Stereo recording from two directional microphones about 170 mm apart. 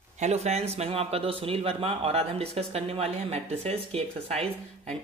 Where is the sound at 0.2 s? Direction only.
40° right (ahead or behind).